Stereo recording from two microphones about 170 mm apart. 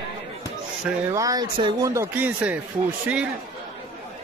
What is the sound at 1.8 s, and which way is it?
Speech, 15° right (ahead or behind).